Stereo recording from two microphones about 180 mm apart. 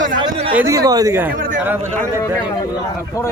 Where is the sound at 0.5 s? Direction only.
15° right (ahead or behind).